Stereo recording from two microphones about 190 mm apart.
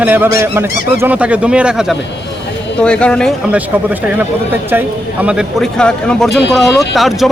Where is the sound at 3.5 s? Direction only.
10° right (ahead or behind).